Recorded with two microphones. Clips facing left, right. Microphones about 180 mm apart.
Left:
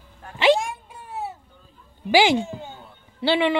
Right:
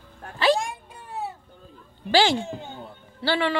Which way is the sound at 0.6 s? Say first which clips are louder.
Left 2 dB; 5° left (ahead or behind).